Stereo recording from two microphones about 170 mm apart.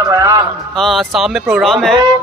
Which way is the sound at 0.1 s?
20° right (ahead or behind).